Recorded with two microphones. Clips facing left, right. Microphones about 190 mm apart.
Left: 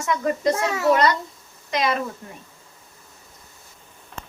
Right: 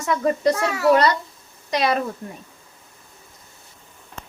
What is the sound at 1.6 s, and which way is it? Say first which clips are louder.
Speech: right 2 dB; 35° right (ahead or behind).